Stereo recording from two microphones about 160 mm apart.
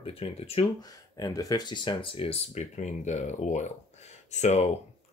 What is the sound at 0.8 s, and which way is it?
Speech, 25° left (ahead or behind).